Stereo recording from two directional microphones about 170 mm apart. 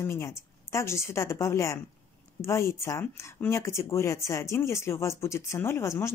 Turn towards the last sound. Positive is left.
turn(degrees=15)  # may be behind; listen again after turning